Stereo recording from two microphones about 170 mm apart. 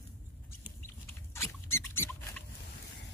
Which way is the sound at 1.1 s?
15° left (ahead or behind).